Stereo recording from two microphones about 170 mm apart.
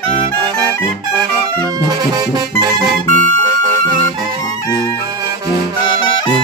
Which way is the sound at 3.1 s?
50° right (ahead or behind).